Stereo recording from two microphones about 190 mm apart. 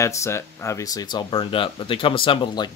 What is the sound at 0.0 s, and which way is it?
Speech, 15° left (ahead or behind).